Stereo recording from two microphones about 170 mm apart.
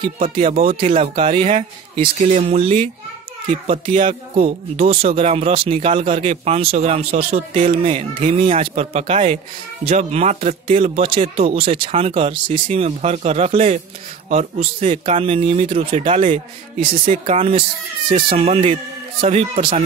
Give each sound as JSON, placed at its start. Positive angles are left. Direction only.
{"t": 0.2, "sound": "speech", "side_deg": -40}